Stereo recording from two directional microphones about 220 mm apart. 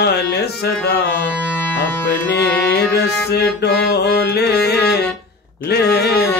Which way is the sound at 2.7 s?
45° left (ahead or behind).